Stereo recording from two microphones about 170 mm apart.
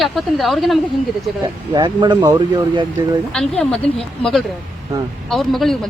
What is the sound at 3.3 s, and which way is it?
A woman's voice, 5° left (ahead or behind).